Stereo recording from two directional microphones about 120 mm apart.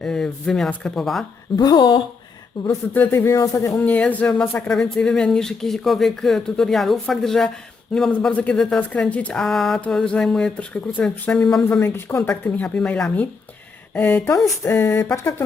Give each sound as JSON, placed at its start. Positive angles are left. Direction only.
{"t": 0.0, "sound": "speech", "side_deg": 5}
{"t": 1.5, "sound": "speech", "side_deg": 35}
{"t": 2.6, "sound": "a man's voice", "side_deg": 20}
{"t": 3.8, "sound": "speech", "side_deg": 15}
{"t": 11.8, "sound": "a man's voice", "side_deg": 20}
{"t": 12.3, "sound": "a man's voice", "side_deg": 10}